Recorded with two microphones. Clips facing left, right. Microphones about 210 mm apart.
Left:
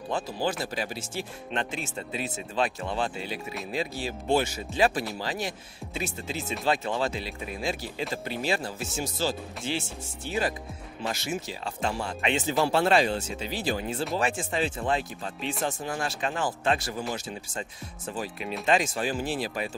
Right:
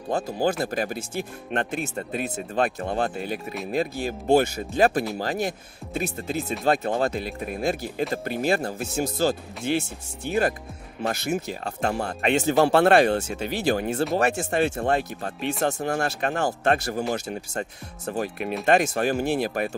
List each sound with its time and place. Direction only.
0.1 s speech: 45° right (ahead or behind)
12.6 s speech: 60° right (ahead or behind)